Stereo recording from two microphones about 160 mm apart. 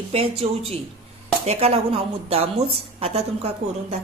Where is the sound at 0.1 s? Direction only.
40° right (ahead or behind).